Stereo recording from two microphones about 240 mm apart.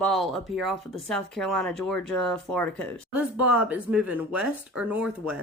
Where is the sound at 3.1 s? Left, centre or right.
Right.